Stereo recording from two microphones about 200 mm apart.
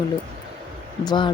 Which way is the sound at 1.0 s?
20° left (ahead or behind).